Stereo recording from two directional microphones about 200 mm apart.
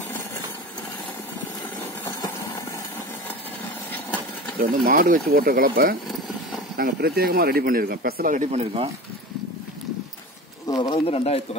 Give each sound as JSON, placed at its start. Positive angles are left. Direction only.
{"t": 2.0, "sound": "engine", "side_deg": 15}
{"t": 4.6, "sound": "speech", "side_deg": -45}
{"t": 10.7, "sound": "speech", "side_deg": 25}